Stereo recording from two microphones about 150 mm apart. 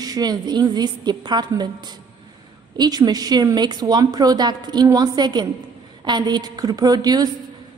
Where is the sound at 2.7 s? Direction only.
25° right (ahead or behind).